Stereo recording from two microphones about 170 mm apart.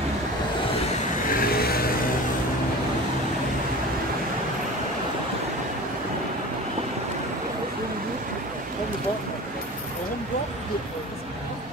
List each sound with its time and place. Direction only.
1.3 s vehicle: 60° left (ahead or behind)